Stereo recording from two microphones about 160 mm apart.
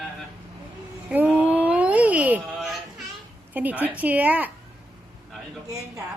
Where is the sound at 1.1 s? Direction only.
10° right (ahead or behind).